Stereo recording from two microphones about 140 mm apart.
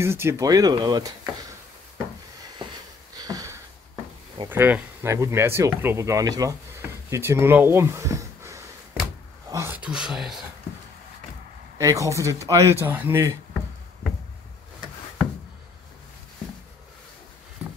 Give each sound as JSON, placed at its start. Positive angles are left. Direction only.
{"t": 0.0, "sound": "speech", "side_deg": -20}
{"t": 3.2, "sound": "sniff", "side_deg": -25}
{"t": 4.5, "sound": "speech", "side_deg": -15}
{"t": 6.8, "sound": "a sound", "side_deg": -15}
{"t": 9.8, "sound": "speech", "side_deg": -5}
{"t": 11.8, "sound": "speech", "side_deg": -25}